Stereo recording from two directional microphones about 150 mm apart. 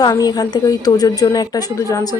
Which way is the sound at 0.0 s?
25° left (ahead or behind).